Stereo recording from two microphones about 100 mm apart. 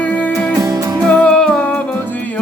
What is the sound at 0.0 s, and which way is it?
Music, 15° left (ahead or behind).